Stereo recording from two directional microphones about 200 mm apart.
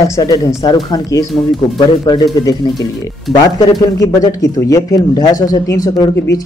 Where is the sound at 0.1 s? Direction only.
20° left (ahead or behind).